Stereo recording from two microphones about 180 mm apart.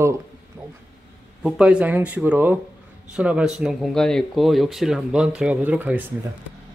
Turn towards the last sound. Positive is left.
turn(degrees=-10)  # may be behind; listen again after turning